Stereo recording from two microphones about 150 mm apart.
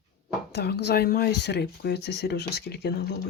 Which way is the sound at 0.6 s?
90° left.